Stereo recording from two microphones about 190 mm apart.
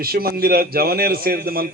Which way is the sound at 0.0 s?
55° right (ahead or behind).